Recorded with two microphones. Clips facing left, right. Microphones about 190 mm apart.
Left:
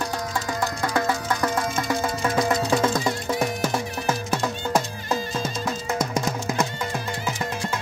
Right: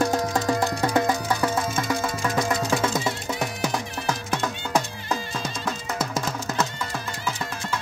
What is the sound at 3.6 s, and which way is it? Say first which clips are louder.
Music: left 2 dB; 5° left (ahead or behind).